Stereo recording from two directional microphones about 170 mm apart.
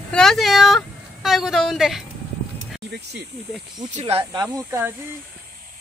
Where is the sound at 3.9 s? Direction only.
35° right (ahead or behind).